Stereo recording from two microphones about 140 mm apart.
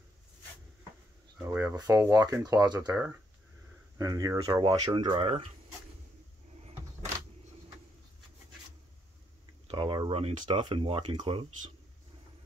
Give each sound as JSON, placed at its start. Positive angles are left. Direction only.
{"t": 1.4, "sound": "speech", "side_deg": -15}
{"t": 4.0, "sound": "speech", "side_deg": -25}
{"t": 9.7, "sound": "speech", "side_deg": -35}